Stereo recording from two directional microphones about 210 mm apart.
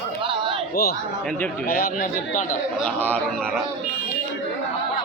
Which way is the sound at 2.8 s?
10° left (ahead or behind).